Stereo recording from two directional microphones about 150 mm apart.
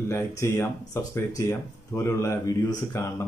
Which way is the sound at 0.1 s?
20° left (ahead or behind).